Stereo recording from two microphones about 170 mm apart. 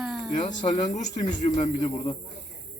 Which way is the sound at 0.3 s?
30° left (ahead or behind).